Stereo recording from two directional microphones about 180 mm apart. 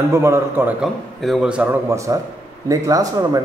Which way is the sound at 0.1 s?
15° right (ahead or behind).